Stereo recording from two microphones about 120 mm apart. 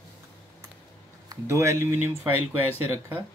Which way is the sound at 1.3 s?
25° right (ahead or behind).